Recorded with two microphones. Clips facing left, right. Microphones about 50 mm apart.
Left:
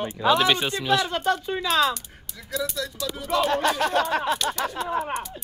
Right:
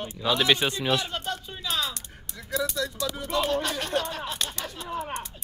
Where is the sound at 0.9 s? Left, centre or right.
Left.